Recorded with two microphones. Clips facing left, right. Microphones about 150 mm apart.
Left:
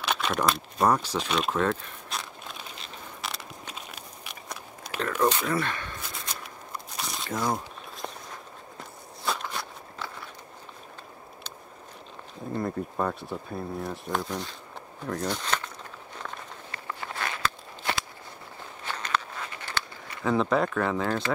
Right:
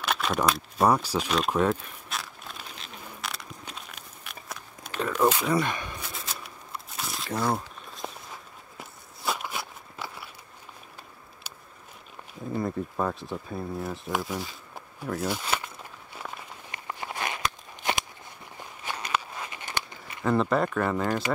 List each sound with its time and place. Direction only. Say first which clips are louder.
0.0 s speech: even; centre (ahead or behind)
1.5 s a sound: right 2 dB; 10° right (ahead or behind)
5.2 s speech: right 2 dB; 5° right (ahead or behind)
5.9 s biting: even; centre (ahead or behind)
8.7 s walk: left 2 dB; 5° right (ahead or behind)
12.5 s speech: even; centre (ahead or behind)
16.2 s walk: even; 10° right (ahead or behind)
18.9 s a sound: even; 10° right (ahead or behind)
20.2 s speech: even; centre (ahead or behind)